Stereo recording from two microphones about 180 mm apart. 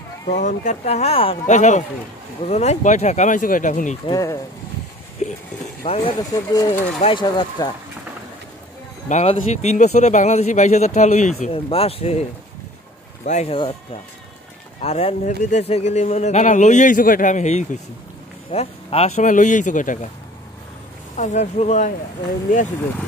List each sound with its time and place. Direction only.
0.3 s a man's voice: 45° left (ahead or behind)
4.1 s speech: 20° left (ahead or behind)
5.2 s speech: 40° left (ahead or behind)
5.9 s speech: 25° left (ahead or behind)
9.1 s a man's voice: 40° left (ahead or behind)
14.8 s a man's voice: 35° left (ahead or behind)
21.2 s a man's voice: 40° left (ahead or behind)